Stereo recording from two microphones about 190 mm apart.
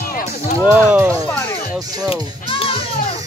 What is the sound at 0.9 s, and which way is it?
Speech, 10° right (ahead or behind).